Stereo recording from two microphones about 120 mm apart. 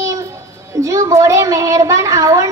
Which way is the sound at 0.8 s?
25° right (ahead or behind).